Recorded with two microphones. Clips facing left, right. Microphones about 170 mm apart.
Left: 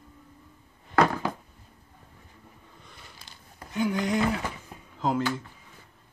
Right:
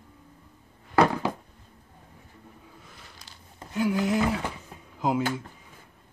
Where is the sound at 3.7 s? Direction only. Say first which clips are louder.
Right 1 dB; 5° right (ahead or behind).